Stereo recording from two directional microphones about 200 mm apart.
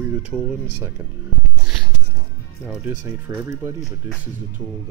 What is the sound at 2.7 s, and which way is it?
Speech, 10° right (ahead or behind).